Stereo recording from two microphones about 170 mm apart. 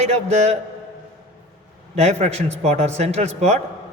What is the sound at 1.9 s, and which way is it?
A man's voice, 40° right (ahead or behind).